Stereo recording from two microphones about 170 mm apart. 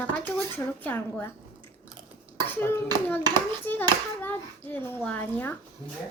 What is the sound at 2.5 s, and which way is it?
Clapping, 10° left (ahead or behind).